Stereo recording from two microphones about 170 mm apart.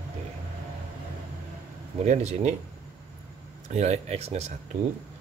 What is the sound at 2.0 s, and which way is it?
Speech, 40° right (ahead or behind).